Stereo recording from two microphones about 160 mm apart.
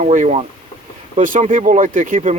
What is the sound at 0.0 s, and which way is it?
Speech, 45° right (ahead or behind).